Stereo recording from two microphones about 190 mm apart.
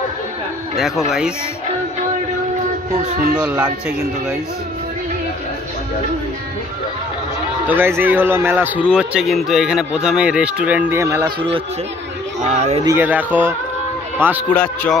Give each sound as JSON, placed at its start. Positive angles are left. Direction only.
{"t": 0.7, "sound": "speech", "side_deg": 0}
{"t": 3.3, "sound": "speech", "side_deg": -5}
{"t": 7.6, "sound": "a man's voice", "side_deg": -10}
{"t": 12.4, "sound": "speech", "side_deg": -35}
{"t": 12.8, "sound": "a man's voice", "side_deg": -10}
{"t": 14.5, "sound": "a man's voice", "side_deg": 10}